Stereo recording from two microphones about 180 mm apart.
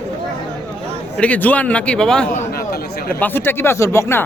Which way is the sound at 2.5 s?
55° left (ahead or behind).